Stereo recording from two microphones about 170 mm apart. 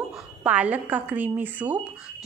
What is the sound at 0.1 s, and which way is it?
A woman's voice, 10° right (ahead or behind).